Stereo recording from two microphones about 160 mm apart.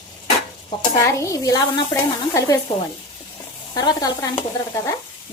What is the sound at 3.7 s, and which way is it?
Speech, 25° left (ahead or behind).